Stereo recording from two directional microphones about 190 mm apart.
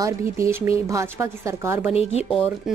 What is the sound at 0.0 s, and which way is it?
Speech, 15° right (ahead or behind).